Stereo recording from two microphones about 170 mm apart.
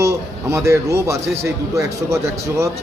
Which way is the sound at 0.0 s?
15° right (ahead or behind).